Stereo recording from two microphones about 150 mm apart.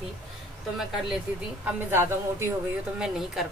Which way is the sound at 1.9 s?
15° right (ahead or behind).